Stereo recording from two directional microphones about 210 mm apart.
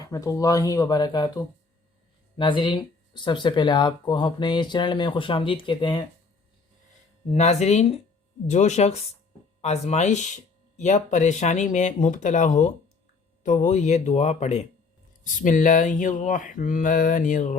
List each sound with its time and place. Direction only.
0.1 s speech: 15° left (ahead or behind)
2.3 s speech: 20° left (ahead or behind)
7.3 s speech: 35° left (ahead or behind)